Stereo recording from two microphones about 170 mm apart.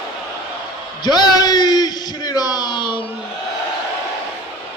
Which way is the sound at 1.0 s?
25° left (ahead or behind).